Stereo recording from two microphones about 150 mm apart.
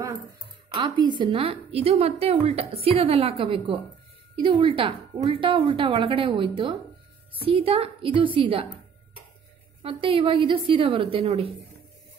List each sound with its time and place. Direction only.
0.7 s a woman's voice: 30° right (ahead or behind)
9.8 s a woman's voice: 35° right (ahead or behind)